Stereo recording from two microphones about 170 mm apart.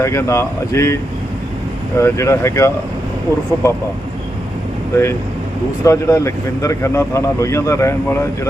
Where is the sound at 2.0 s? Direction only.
15° left (ahead or behind).